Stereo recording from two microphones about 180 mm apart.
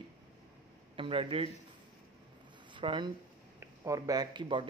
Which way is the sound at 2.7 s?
25° right (ahead or behind).